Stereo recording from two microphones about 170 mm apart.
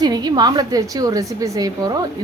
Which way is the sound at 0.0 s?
25° right (ahead or behind).